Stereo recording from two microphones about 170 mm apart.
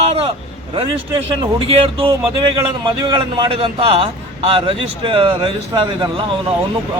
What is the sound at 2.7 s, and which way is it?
A man's voice, 25° right (ahead or behind).